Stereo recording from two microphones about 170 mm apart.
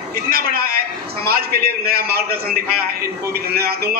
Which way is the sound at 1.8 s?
65° right (ahead or behind).